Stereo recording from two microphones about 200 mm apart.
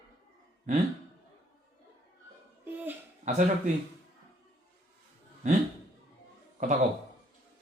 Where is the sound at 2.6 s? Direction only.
10° right (ahead or behind).